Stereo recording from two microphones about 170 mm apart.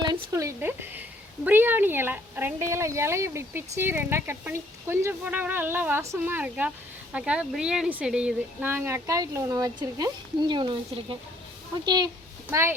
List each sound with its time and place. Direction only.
0.0 s a sound: 20° right (ahead or behind)
1.5 s speech: 10° right (ahead or behind)
11.9 s speech: 25° right (ahead or behind)
12.5 s speech: 15° right (ahead or behind)